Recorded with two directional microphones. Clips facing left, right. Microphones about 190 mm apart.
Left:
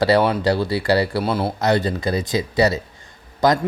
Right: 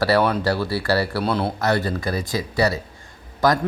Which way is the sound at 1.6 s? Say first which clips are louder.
Left 3 dB; 20° left (ahead or behind).